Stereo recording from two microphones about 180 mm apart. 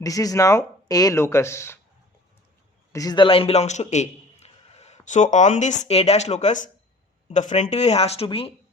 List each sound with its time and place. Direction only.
0.0 s speech: 20° left (ahead or behind)
2.9 s a man's voice: 20° left (ahead or behind)